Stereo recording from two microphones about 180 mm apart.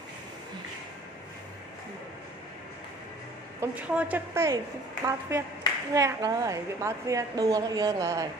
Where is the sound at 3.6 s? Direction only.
10° right (ahead or behind).